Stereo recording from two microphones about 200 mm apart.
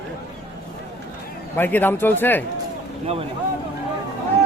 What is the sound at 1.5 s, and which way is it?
Speech, 10° left (ahead or behind).